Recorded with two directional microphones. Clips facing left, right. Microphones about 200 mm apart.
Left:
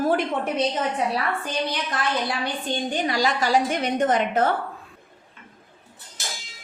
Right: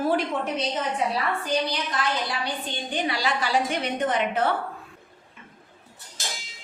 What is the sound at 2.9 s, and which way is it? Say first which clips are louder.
A woman's voice: left 1 dB; 45° left (ahead or behind).